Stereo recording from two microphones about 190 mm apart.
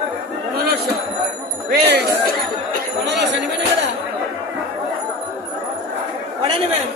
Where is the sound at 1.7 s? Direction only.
60° right (ahead or behind).